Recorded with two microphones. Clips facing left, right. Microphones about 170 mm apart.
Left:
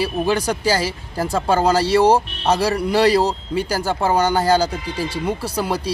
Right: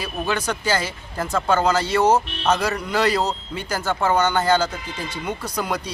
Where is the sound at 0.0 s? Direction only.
35° left (ahead or behind).